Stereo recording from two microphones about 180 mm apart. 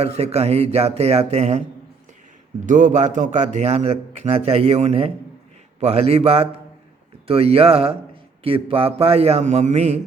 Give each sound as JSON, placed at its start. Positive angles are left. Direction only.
{"t": 0.0, "sound": "a man's voice", "side_deg": -35}
{"t": 2.6, "sound": "a man's voice", "side_deg": -45}